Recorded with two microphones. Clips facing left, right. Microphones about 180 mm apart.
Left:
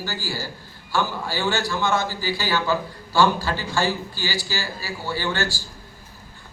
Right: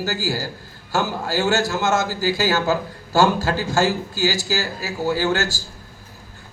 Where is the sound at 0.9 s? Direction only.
45° right (ahead or behind).